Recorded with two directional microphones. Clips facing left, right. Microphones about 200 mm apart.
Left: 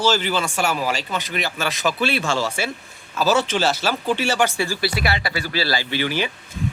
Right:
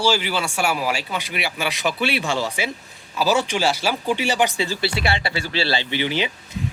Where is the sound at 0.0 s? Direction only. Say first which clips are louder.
Left 1 dB; 10° right (ahead or behind).